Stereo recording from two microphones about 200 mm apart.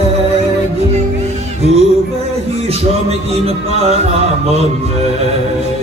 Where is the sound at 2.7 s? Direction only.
30° right (ahead or behind).